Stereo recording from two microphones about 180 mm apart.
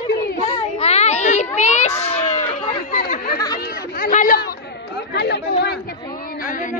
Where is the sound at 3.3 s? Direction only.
20° left (ahead or behind).